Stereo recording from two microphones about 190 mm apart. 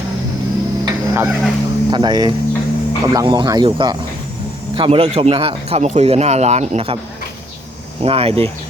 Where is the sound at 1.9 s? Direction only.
20° right (ahead or behind).